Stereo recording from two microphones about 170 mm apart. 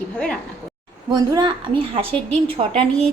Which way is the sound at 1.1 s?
25° right (ahead or behind).